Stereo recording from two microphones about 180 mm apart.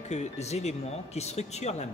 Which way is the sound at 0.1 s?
40° left (ahead or behind).